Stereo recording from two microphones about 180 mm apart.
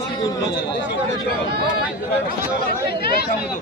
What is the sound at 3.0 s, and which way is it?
Speech, 60° left (ahead or behind).